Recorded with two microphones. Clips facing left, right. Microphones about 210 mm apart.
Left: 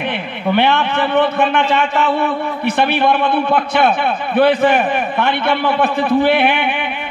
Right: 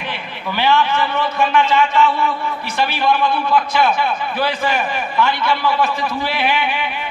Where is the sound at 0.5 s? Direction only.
60° left (ahead or behind).